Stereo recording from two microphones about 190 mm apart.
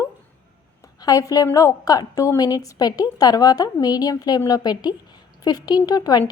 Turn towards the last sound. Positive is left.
turn(degrees=20)  # may be behind; listen again after turning